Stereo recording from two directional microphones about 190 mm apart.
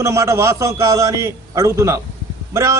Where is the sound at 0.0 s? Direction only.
15° right (ahead or behind).